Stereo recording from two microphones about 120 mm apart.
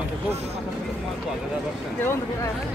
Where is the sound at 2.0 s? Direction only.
20° left (ahead or behind).